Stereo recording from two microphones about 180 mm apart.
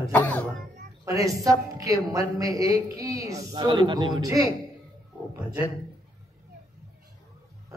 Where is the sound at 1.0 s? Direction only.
20° right (ahead or behind).